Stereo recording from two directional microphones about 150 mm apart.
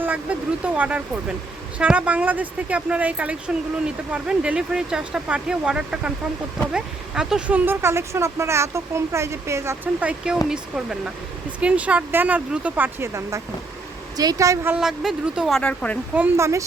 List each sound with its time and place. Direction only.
0.0 s a woman's voice: 10° right (ahead or behind)
14.7 s speech: 5° right (ahead or behind)
16.1 s a woman's voice: 15° right (ahead or behind)